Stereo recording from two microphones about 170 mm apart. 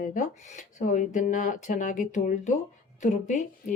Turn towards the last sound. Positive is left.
turn(degrees=45)  # may be behind; listen again after turning